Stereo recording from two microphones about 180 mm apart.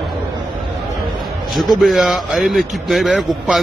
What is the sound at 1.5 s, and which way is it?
A man's voice, centre (ahead or behind).